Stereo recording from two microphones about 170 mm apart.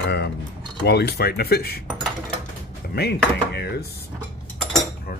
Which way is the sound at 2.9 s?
70° left (ahead or behind).